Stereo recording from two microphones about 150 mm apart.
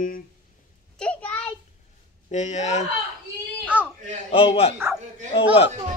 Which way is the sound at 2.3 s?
50° left (ahead or behind).